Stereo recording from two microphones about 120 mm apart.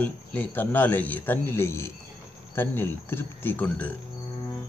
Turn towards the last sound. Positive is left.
turn(degrees=15)  # may be behind; listen again after turning